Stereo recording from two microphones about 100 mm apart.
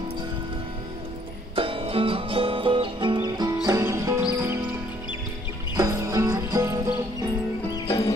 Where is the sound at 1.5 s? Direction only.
60° right (ahead or behind).